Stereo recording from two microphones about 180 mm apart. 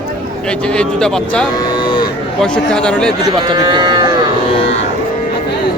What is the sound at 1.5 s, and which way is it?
Cattle, 25° left (ahead or behind).